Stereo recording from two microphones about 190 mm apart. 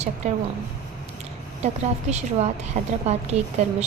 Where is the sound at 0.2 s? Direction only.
35° right (ahead or behind).